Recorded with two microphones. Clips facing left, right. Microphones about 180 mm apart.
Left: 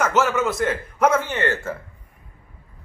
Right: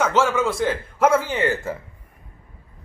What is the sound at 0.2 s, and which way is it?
A man's voice, 5° left (ahead or behind).